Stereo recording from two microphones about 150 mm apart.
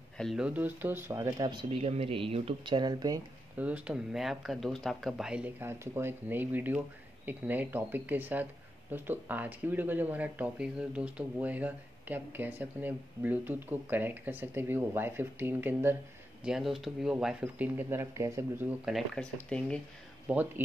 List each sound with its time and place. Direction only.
0.2 s speech: centre (ahead or behind)
0.5 s speech: 10° right (ahead or behind); by 3.2 s 25° right (ahead or behind)
3.5 s speech: 10° right (ahead or behind)
16.4 s speech: centre (ahead or behind)
18.9 s speech: centre (ahead or behind)
20.2 s speech: 10° right (ahead or behind)